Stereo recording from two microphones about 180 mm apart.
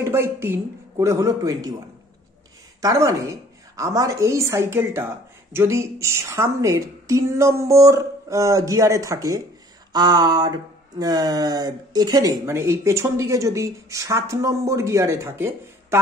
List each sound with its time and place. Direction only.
0.0 s a woman's voice: 15° right (ahead or behind)
2.8 s a woman's voice: 20° right (ahead or behind)
9.9 s a sound: 25° right (ahead or behind)
11.0 s a woman's voice: 20° right (ahead or behind)